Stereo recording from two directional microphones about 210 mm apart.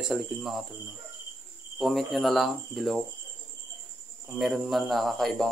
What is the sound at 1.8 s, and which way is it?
Speech, centre (ahead or behind).